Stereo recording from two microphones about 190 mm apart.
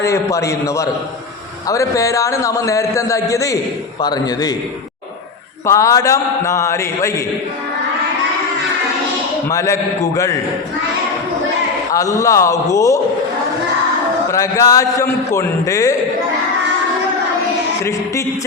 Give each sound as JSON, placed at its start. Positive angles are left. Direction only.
{"t": 0.0, "sound": "a man's voice", "side_deg": 15}
{"t": 5.6, "sound": "a man's voice", "side_deg": 15}
{"t": 9.5, "sound": "a man's voice", "side_deg": 15}
{"t": 11.9, "sound": "a man's voice", "side_deg": 15}
{"t": 14.3, "sound": "a man's voice", "side_deg": 15}